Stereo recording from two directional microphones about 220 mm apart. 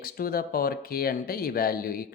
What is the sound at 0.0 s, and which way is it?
Speech, 40° left (ahead or behind).